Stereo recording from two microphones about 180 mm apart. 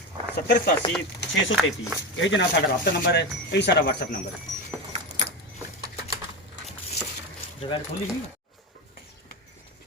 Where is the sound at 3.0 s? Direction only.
65° left (ahead or behind).